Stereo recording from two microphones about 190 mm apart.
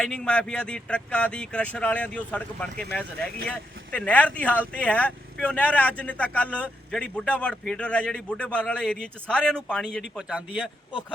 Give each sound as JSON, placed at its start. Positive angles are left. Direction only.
{"t": 0.0, "sound": "a man's voice", "side_deg": 5}